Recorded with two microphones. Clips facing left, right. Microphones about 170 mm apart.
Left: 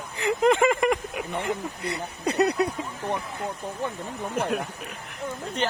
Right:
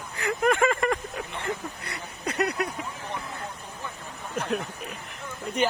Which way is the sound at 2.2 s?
30° left (ahead or behind).